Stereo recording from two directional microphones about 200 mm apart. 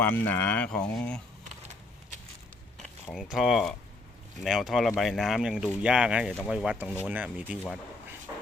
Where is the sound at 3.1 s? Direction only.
Centre (ahead or behind).